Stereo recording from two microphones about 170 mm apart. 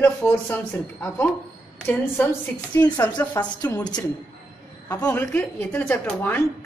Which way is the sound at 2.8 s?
20° left (ahead or behind).